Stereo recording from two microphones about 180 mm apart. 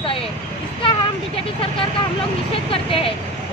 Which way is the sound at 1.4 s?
30° left (ahead or behind).